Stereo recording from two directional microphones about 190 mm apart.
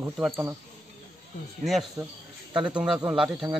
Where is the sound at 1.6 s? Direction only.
Centre (ahead or behind).